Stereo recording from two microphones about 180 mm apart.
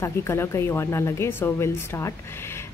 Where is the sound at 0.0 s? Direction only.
15° left (ahead or behind).